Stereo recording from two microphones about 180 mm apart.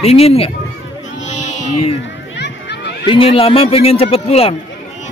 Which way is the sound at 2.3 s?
70° left (ahead or behind).